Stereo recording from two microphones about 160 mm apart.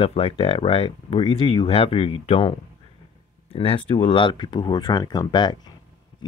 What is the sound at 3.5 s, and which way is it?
Speech, 35° left (ahead or behind).